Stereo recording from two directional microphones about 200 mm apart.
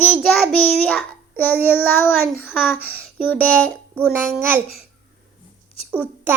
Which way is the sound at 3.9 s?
10° right (ahead or behind).